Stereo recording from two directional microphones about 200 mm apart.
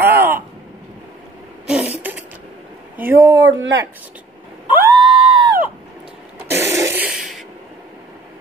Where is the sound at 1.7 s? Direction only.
5° right (ahead or behind).